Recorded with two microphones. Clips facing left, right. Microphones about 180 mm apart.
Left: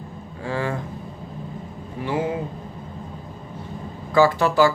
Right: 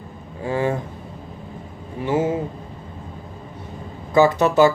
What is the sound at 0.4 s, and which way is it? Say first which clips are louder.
Speech: right 4 dB; 20° right (ahead or behind).